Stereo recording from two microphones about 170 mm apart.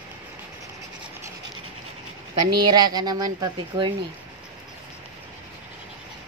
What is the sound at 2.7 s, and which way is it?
A woman's voice, 25° right (ahead or behind).